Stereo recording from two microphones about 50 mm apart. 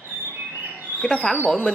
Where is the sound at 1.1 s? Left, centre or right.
Centre.